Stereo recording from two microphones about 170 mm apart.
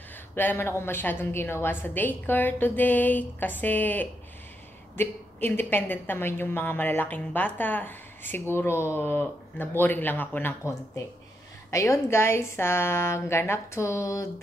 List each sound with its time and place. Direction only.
0.4 s a woman's voice: 10° left (ahead or behind)